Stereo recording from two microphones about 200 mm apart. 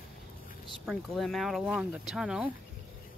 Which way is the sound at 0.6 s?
Centre (ahead or behind).